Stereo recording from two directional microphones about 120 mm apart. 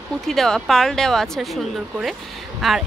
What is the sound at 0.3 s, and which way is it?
Speech, 5° left (ahead or behind).